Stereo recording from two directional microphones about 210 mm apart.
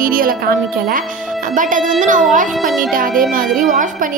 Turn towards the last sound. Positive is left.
turn(degrees=-40)  # may be behind; listen again after turning